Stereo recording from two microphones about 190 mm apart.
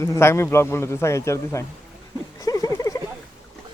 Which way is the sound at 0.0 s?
15° left (ahead or behind).